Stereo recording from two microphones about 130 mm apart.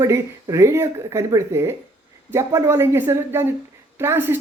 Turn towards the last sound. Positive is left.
turn(degrees=-15)  # may be behind; listen again after turning